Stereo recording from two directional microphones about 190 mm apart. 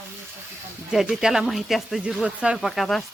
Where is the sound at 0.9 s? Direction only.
5° right (ahead or behind).